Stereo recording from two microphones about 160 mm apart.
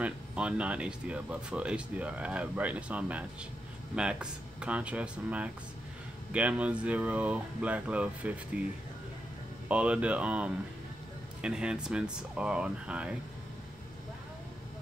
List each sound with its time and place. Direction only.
0.0 s speech: 10° right (ahead or behind)
9.7 s speech: 5° right (ahead or behind)